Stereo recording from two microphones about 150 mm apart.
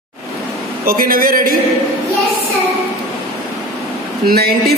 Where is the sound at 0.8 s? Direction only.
75° right (ahead or behind).